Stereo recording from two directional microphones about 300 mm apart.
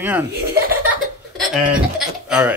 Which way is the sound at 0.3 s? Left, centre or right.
Right.